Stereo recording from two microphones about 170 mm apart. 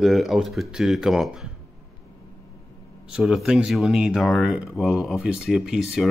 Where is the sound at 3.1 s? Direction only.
5° right (ahead or behind).